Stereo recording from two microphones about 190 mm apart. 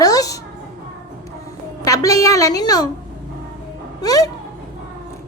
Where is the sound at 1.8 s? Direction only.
15° left (ahead or behind).